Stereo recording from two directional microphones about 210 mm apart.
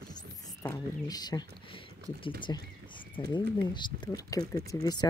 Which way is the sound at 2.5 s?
15° left (ahead or behind).